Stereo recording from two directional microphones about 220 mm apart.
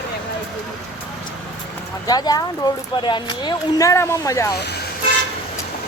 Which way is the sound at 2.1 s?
15° left (ahead or behind).